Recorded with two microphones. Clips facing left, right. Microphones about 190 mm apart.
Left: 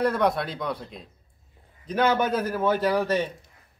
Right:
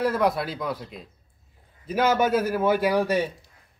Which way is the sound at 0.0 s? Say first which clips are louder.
Even; centre (ahead or behind).